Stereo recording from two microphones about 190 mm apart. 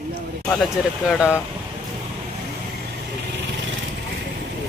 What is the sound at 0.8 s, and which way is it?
Speech, centre (ahead or behind).